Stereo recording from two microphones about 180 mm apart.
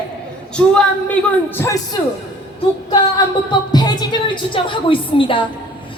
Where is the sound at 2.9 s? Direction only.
25° left (ahead or behind).